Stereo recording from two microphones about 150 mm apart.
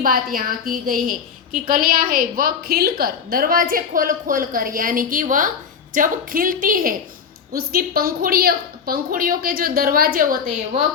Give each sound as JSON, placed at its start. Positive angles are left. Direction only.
{"t": 0.0, "sound": "a woman's voice", "side_deg": -70}
{"t": 7.5, "sound": "a woman's voice", "side_deg": -85}